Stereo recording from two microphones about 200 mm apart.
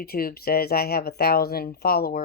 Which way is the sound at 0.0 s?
50° left (ahead or behind).